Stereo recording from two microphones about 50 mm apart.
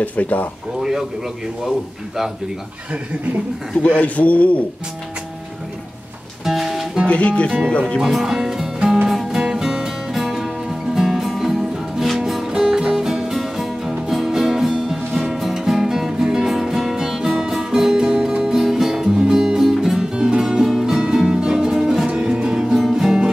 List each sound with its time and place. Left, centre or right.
0.0 s speech: left
0.7 s speech: centre
3.8 s a man's voice: left
6.4 s music: centre
7.1 s a man's voice: left
8.0 s speech: centre
8.8 s music: centre
9.1 s music: centre